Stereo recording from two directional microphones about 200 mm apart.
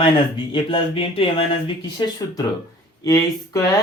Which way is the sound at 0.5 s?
25° left (ahead or behind).